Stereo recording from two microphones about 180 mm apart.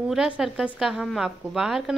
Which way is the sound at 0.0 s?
5° right (ahead or behind).